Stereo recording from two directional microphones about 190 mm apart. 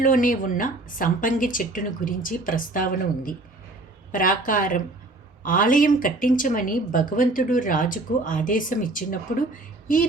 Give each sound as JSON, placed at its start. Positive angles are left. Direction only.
{"t": 0.0, "sound": "speech", "side_deg": 45}